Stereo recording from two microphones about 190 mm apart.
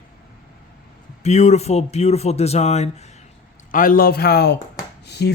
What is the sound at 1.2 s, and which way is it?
Speech, 35° left (ahead or behind).